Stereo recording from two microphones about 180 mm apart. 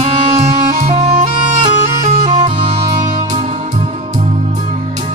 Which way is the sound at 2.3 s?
25° right (ahead or behind).